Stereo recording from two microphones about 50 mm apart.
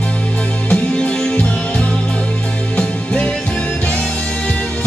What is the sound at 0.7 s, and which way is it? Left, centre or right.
Music, centre.